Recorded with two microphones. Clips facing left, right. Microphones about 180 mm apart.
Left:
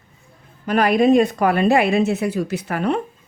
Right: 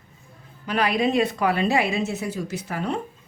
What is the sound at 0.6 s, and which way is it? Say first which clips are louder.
A woman's voice: left 7 dB; 50° left (ahead or behind).